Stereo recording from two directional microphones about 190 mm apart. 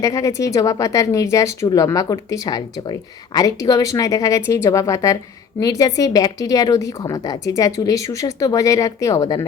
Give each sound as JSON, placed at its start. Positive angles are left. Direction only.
{"t": 0.0, "sound": "a woman's voice", "side_deg": 15}